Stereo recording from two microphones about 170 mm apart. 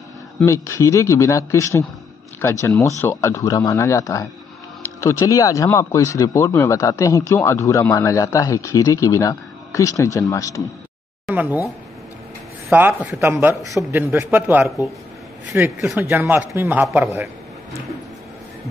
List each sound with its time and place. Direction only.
0.5 s speech: 15° left (ahead or behind)
11.2 s speech: 10° right (ahead or behind)
12.7 s a man's voice: 10° right (ahead or behind)